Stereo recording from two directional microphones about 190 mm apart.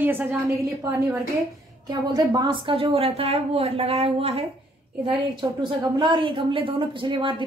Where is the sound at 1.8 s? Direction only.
20° right (ahead or behind).